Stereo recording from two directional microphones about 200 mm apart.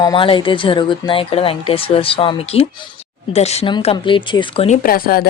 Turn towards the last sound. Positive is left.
turn(degrees=50)  # may be behind; listen again after turning